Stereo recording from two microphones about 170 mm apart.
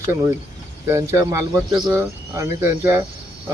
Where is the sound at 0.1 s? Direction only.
15° right (ahead or behind).